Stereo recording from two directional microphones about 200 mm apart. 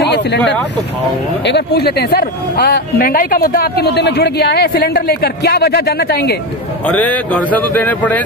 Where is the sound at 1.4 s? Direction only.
55° left (ahead or behind).